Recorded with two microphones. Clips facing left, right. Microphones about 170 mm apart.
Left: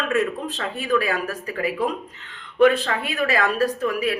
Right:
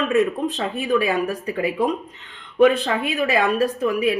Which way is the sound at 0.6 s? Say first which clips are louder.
Even; 20° right (ahead or behind).